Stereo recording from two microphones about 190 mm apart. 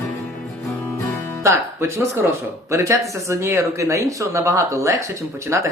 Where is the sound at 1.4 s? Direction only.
15° right (ahead or behind).